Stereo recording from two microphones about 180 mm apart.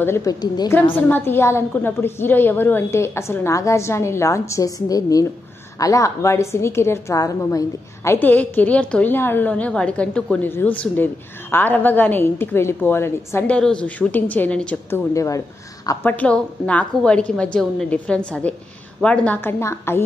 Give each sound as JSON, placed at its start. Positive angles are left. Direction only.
{"t": 0.0, "sound": "a woman's voice", "side_deg": 15}
{"t": 0.9, "sound": "a woman's voice", "side_deg": 10}
{"t": 15.1, "sound": "a woman's voice", "side_deg": 20}